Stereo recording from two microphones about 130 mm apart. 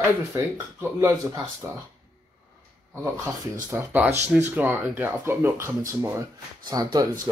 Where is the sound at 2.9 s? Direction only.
20° right (ahead or behind).